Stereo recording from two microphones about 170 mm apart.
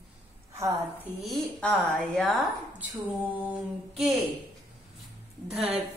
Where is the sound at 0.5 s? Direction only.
15° right (ahead or behind).